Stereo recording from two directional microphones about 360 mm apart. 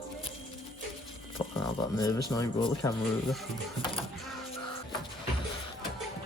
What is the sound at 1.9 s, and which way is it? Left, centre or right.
Speech, centre.